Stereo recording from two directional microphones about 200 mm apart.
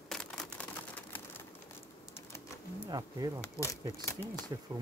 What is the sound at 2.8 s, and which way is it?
Speech, 20° right (ahead or behind).